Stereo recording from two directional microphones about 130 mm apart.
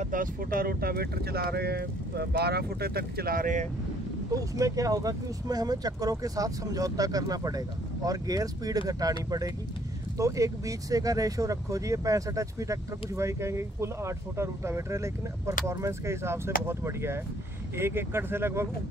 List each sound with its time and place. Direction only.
0.0 s speech: 90° right
3.3 s speech: 85° right
4.3 s speech: 25° right (ahead or behind)
10.1 s speech: 25° right (ahead or behind)